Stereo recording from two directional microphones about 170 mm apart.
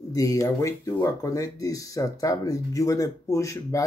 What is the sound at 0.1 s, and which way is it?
Speech, 20° left (ahead or behind).